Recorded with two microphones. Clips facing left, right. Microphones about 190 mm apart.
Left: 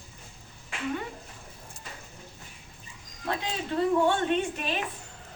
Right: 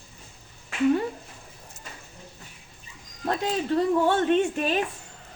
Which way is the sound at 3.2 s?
45° right (ahead or behind).